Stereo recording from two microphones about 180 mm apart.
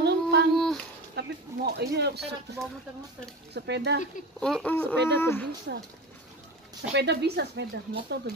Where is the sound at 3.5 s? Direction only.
70° right (ahead or behind).